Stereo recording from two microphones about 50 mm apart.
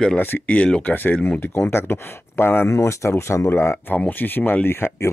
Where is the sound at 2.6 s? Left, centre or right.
Left.